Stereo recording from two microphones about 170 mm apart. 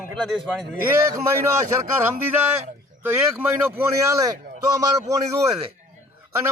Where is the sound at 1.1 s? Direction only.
15° right (ahead or behind).